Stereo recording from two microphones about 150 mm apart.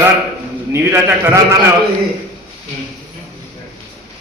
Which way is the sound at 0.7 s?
15° right (ahead or behind).